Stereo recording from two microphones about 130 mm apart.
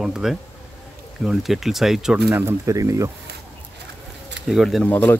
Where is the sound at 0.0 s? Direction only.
5° right (ahead or behind).